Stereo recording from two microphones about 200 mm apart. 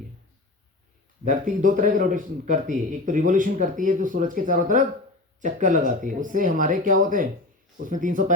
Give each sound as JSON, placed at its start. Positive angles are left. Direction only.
{"t": 1.2, "sound": "a man's voice", "side_deg": -40}